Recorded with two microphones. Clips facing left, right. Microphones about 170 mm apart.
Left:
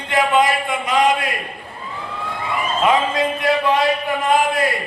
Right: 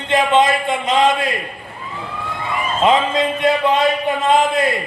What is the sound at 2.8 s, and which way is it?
A man's voice, 25° right (ahead or behind).